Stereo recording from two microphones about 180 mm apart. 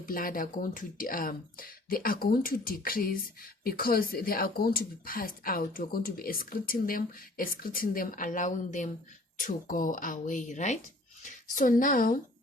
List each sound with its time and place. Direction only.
0.0 s speech: 50° left (ahead or behind)